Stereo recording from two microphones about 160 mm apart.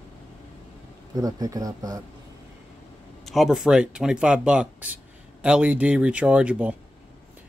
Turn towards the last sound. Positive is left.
turn(degrees=-10)  # may be behind; listen again after turning